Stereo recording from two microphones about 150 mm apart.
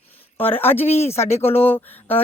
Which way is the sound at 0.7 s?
15° left (ahead or behind).